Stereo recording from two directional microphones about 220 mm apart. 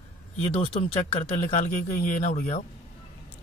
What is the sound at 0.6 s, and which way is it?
Speech, 25° left (ahead or behind).